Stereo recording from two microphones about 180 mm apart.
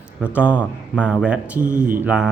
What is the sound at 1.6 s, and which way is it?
Speech, 45° right (ahead or behind).